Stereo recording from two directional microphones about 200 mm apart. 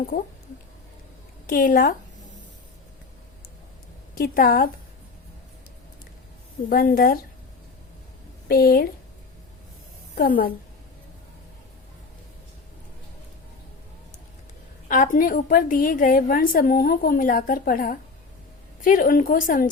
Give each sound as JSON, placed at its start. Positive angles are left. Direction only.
{"t": 1.5, "sound": "a woman's voice", "side_deg": 45}
{"t": 4.1, "sound": "a woman's voice", "side_deg": 45}
{"t": 6.7, "sound": "a woman's voice", "side_deg": 45}
{"t": 8.4, "sound": "a woman's voice", "side_deg": 50}
{"t": 10.2, "sound": "a woman's voice", "side_deg": 45}
{"t": 14.8, "sound": "a woman's voice", "side_deg": 40}